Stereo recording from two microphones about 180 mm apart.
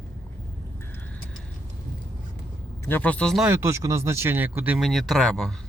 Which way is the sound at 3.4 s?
15° right (ahead or behind).